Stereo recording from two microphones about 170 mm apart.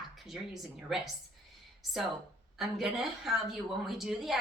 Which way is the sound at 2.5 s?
Centre (ahead or behind).